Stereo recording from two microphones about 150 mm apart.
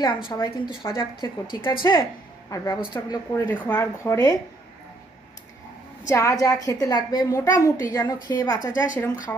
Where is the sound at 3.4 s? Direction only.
10° left (ahead or behind).